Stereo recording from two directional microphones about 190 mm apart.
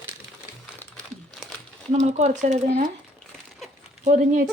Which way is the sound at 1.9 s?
35° right (ahead or behind).